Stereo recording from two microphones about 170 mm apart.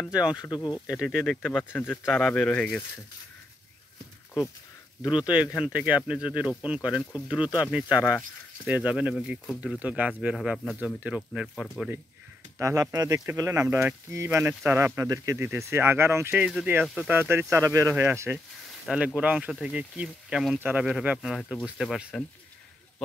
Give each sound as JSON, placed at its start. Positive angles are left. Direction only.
{"t": 0.1, "sound": "speech", "side_deg": -5}
{"t": 0.4, "sound": "speech", "side_deg": 25}
{"t": 0.8, "sound": "speech", "side_deg": -5}
{"t": 5.2, "sound": "speech", "side_deg": -5}
{"t": 11.4, "sound": "speech", "side_deg": 5}
{"t": 12.5, "sound": "speech", "side_deg": -15}
{"t": 17.1, "sound": "speech", "side_deg": -15}